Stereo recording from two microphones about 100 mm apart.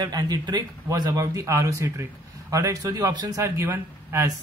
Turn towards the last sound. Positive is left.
turn(degrees=-25)  # may be behind; listen again after turning